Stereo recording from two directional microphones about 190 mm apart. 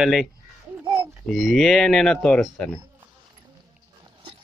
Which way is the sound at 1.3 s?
Centre (ahead or behind).